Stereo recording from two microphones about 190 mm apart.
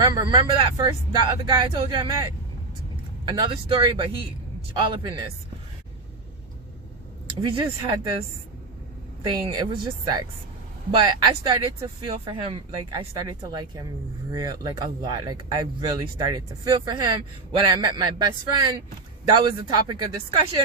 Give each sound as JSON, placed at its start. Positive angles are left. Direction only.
{"t": 0.0, "sound": "speech", "side_deg": -25}
{"t": 3.2, "sound": "speech", "side_deg": -25}
{"t": 7.3, "sound": "speech", "side_deg": -25}
{"t": 9.2, "sound": "speech", "side_deg": -20}